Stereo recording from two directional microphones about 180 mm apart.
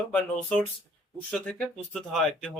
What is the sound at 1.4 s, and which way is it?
Speech, 5° left (ahead or behind).